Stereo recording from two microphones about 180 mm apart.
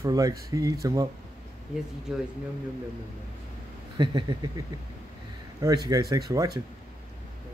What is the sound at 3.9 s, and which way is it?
Speech, 25° right (ahead or behind).